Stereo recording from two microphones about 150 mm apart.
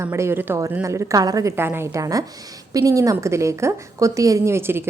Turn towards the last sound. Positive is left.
turn(degrees=-15)  # may be behind; listen again after turning